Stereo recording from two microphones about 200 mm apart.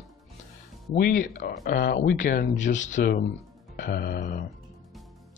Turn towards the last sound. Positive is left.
turn(degrees=45)  # may be behind; listen again after turning